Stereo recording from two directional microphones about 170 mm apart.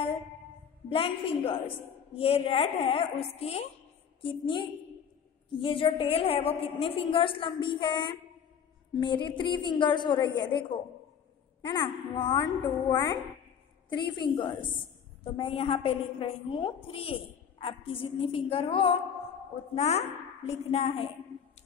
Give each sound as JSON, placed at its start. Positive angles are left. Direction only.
{"t": 0.8, "sound": "a woman's voice", "side_deg": 35}
{"t": 11.6, "sound": "a woman's voice", "side_deg": 25}